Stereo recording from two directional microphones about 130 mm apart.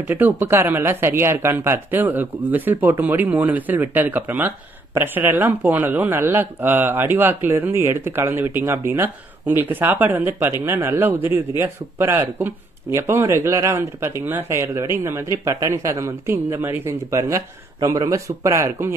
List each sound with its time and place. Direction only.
0.0 s speech: 15° right (ahead or behind)